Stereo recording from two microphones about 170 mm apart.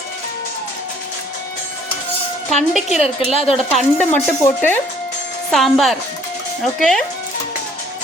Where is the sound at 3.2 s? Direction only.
35° left (ahead or behind).